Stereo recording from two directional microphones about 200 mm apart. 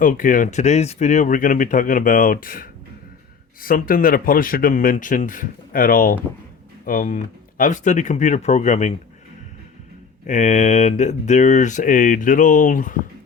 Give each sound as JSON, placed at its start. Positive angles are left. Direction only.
{"t": 0.0, "sound": "speech", "side_deg": 40}
{"t": 10.2, "sound": "speech", "side_deg": 35}